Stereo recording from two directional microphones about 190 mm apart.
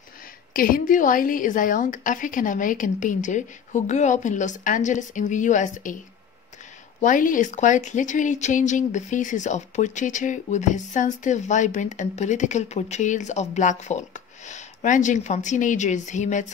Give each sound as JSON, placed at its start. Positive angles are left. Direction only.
{"t": 0.5, "sound": "a woman's voice", "side_deg": 50}
{"t": 7.0, "sound": "speech", "side_deg": 45}